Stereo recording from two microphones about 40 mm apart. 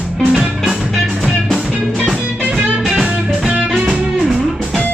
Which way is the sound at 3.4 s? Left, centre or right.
Centre.